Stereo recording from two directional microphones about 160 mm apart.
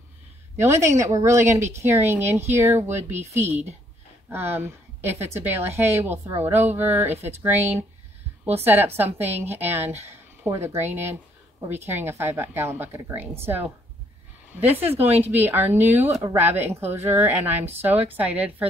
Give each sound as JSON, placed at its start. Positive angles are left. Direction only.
{"t": 0.6, "sound": "speech", "side_deg": -20}
{"t": 4.3, "sound": "speech", "side_deg": -15}
{"t": 15.0, "sound": "a woman's voice", "side_deg": -40}
{"t": 15.3, "sound": "speech", "side_deg": -15}